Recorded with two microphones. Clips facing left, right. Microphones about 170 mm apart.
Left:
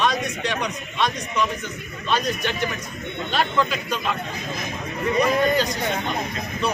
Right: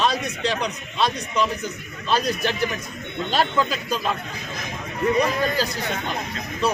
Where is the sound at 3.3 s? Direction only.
35° right (ahead or behind).